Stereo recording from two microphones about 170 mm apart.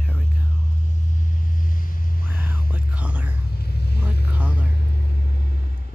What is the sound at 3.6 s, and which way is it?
Vehicle, 70° left (ahead or behind).